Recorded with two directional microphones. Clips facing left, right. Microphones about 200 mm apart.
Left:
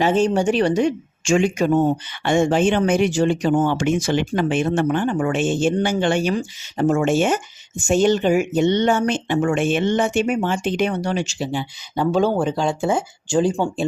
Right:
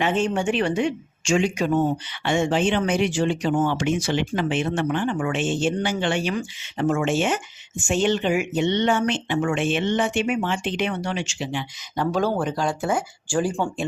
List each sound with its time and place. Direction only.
0.0 s speech: 40° left (ahead or behind); by 13.7 s 20° left (ahead or behind)